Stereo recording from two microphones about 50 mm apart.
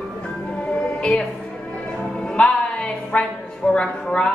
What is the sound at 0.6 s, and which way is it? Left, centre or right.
Music, left.